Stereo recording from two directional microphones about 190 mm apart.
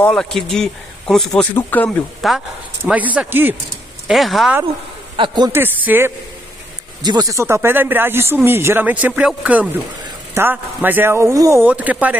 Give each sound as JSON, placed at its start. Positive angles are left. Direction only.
{"t": 0.0, "sound": "speech", "side_deg": 5}
{"t": 4.1, "sound": "speech", "side_deg": 0}
{"t": 5.1, "sound": "a man's voice", "side_deg": -25}
{"t": 5.5, "sound": "speech", "side_deg": -10}
{"t": 7.0, "sound": "speech", "side_deg": -20}